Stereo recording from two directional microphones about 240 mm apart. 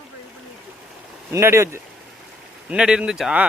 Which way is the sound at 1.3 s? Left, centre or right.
Centre.